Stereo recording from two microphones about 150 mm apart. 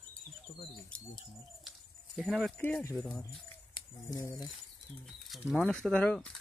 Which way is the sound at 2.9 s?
5° left (ahead or behind).